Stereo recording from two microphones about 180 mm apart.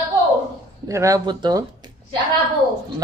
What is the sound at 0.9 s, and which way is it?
Speech, 15° right (ahead or behind).